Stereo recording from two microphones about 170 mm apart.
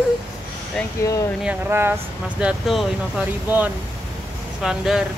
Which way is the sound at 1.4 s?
15° right (ahead or behind).